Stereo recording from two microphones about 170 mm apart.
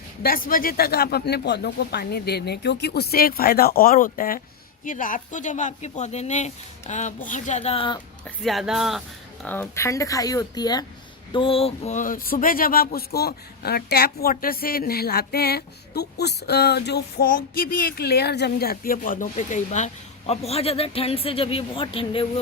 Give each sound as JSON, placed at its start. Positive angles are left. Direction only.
{"t": 0.2, "sound": "a woman's voice", "side_deg": 55}
{"t": 8.4, "sound": "speech", "side_deg": 0}
{"t": 9.4, "sound": "speech", "side_deg": 10}